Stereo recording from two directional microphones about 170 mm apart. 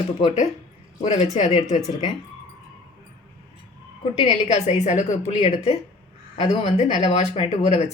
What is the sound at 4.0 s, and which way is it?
A woman's voice, 35° left (ahead or behind).